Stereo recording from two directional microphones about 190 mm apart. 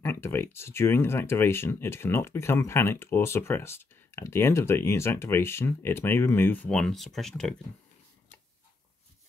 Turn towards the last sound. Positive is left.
turn(degrees=0)  # may be behind; listen again after turning